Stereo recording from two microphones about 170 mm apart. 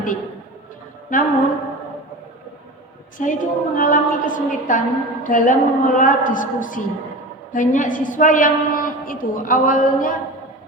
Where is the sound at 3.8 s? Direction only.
50° left (ahead or behind).